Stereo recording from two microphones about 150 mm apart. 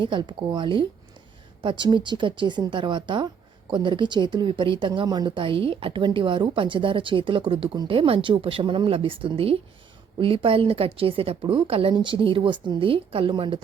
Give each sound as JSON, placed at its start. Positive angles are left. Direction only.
{"t": 0.0, "sound": "a woman's voice", "side_deg": -30}